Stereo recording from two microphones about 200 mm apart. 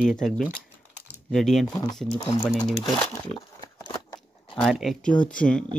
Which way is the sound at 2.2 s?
20° left (ahead or behind).